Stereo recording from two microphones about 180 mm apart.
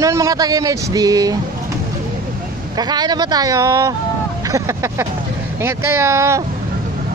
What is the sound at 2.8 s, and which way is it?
Speech, 25° right (ahead or behind).